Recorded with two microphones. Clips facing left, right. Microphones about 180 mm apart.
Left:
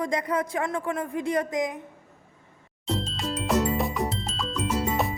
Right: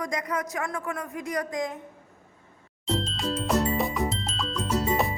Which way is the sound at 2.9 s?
Centre (ahead or behind).